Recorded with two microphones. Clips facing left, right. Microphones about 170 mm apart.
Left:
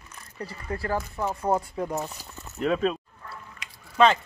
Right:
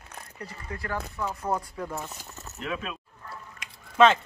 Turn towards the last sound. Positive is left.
turn(degrees=0)  # may be behind; listen again after turning